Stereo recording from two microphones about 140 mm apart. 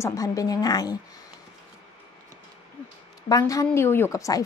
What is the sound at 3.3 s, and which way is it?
A woman's voice, 25° left (ahead or behind).